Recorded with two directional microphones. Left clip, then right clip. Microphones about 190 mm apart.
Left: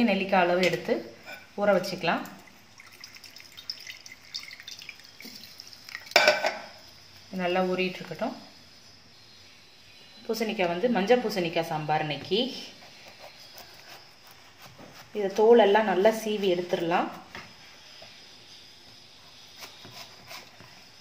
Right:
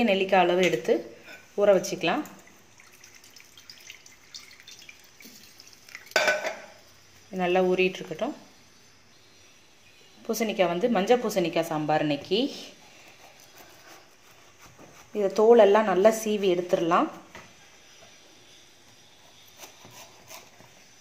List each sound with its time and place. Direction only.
0.0 s a woman's voice: 45° right (ahead or behind)
7.3 s a woman's voice: 45° right (ahead or behind)
10.2 s a woman's voice: 50° right (ahead or behind)
15.1 s a woman's voice: 45° right (ahead or behind)